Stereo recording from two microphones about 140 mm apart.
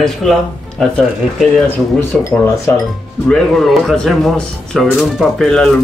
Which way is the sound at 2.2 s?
20° left (ahead or behind).